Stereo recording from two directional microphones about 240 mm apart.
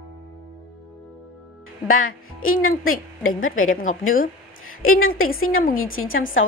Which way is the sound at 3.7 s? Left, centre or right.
Left.